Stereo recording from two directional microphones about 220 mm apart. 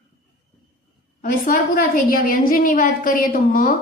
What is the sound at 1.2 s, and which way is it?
A woman's voice, 40° left (ahead or behind).